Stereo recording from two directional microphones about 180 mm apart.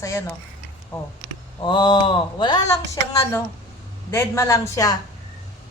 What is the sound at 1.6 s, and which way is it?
Speech, 25° left (ahead or behind).